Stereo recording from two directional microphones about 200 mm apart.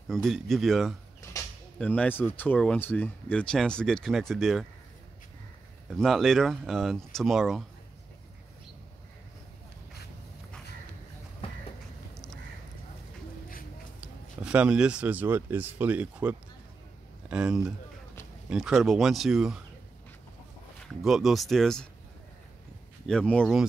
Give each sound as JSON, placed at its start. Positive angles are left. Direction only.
{"t": 0.1, "sound": "speech", "side_deg": 0}
{"t": 1.3, "sound": "a sound", "side_deg": 15}
{"t": 1.8, "sound": "speech", "side_deg": 5}
{"t": 5.9, "sound": "speech", "side_deg": 0}
{"t": 11.4, "sound": "a sound", "side_deg": 30}
{"t": 14.0, "sound": "speech", "side_deg": -5}
{"t": 21.0, "sound": "speech", "side_deg": 0}
{"t": 23.0, "sound": "speech", "side_deg": 5}